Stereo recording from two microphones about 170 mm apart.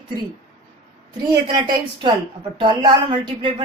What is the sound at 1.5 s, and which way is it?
Speech, 25° right (ahead or behind).